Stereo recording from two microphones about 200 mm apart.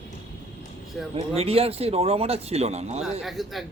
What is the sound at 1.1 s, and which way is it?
Speech, 30° right (ahead or behind).